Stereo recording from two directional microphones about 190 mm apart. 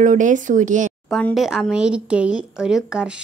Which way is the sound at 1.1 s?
Centre (ahead or behind).